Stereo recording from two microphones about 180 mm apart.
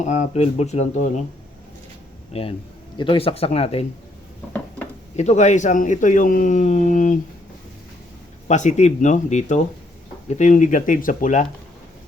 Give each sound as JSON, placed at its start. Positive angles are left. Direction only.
{"t": 0.0, "sound": "speech", "side_deg": 40}
{"t": 2.3, "sound": "speech", "side_deg": 30}
{"t": 5.1, "sound": "speech", "side_deg": 40}
{"t": 8.4, "sound": "speech", "side_deg": 40}